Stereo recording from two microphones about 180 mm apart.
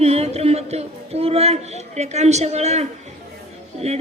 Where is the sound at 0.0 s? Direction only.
35° right (ahead or behind).